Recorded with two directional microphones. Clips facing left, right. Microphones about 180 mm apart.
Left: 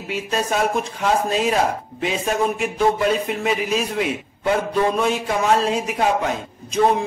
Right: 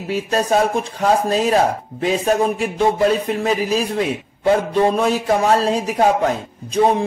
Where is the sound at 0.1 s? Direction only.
35° right (ahead or behind).